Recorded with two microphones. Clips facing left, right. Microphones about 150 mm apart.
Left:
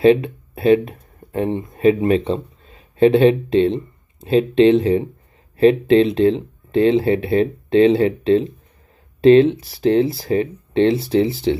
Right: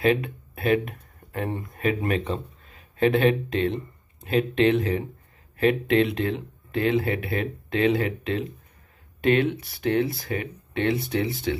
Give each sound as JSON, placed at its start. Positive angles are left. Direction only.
{"t": 0.0, "sound": "speech", "side_deg": 30}